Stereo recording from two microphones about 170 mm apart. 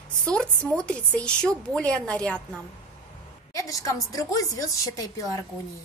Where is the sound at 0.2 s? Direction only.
5° left (ahead or behind).